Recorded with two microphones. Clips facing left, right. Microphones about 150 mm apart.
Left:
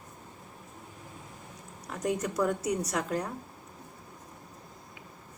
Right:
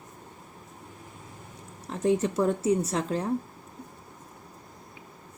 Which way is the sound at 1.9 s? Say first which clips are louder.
Right 6 dB; 25° right (ahead or behind).